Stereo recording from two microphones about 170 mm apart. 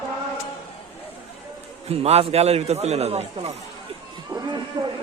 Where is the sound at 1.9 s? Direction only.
35° right (ahead or behind).